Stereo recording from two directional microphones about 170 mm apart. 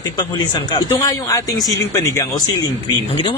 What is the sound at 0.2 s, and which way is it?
Speech, 25° left (ahead or behind).